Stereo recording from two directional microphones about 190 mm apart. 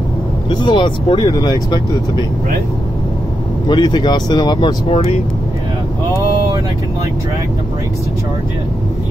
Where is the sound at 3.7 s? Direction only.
25° left (ahead or behind).